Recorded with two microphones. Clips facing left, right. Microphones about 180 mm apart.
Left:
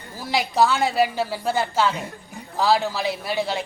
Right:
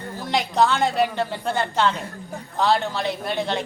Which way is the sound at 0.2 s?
5° left (ahead or behind).